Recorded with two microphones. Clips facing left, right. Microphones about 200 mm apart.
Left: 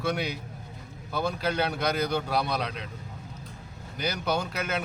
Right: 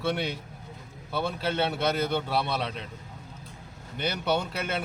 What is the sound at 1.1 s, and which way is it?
A man's voice, 5° right (ahead or behind).